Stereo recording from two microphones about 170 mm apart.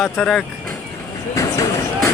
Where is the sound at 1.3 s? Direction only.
20° left (ahead or behind).